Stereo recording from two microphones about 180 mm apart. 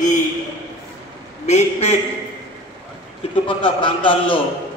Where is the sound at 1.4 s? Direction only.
40° left (ahead or behind).